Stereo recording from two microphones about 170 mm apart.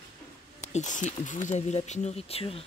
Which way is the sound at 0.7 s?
45° left (ahead or behind).